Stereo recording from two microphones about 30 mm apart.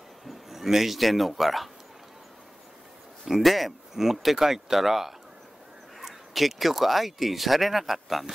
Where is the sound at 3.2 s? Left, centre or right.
Centre.